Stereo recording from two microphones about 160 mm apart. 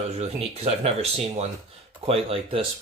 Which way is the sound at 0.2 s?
40° right (ahead or behind).